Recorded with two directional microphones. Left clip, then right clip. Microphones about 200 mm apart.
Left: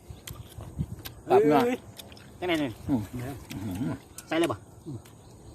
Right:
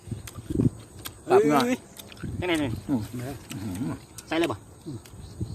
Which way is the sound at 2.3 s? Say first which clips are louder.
Right 1 dB; 20° right (ahead or behind).